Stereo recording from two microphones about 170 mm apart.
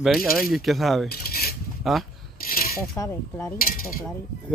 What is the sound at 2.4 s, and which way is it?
Coin, 60° left (ahead or behind).